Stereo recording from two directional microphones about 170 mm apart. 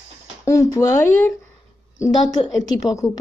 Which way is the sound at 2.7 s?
20° left (ahead or behind).